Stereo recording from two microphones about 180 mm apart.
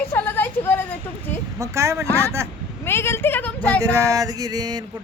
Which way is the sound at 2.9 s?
15° left (ahead or behind).